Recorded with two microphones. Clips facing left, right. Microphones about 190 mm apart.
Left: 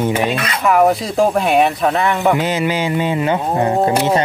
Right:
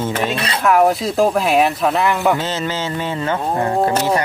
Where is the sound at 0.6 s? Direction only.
Centre (ahead or behind).